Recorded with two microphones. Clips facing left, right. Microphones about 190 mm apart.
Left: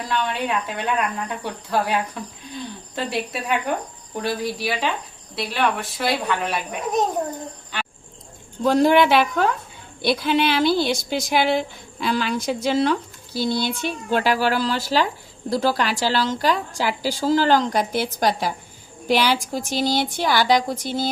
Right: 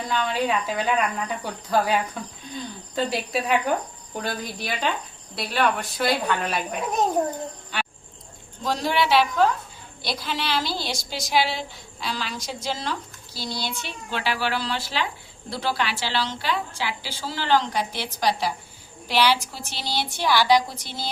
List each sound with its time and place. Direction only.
0.1 s speech: centre (ahead or behind)
7.7 s a sound: centre (ahead or behind)
8.6 s a woman's voice: 55° left (ahead or behind)